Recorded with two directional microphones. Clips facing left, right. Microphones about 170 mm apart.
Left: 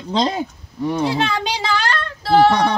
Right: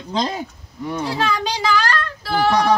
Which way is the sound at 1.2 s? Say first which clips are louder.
Even; 25° left (ahead or behind).